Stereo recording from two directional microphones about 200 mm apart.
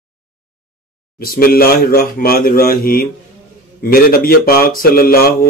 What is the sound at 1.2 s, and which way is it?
A man's voice, 45° left (ahead or behind).